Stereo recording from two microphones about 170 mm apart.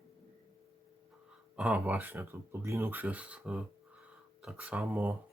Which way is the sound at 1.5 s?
5° right (ahead or behind).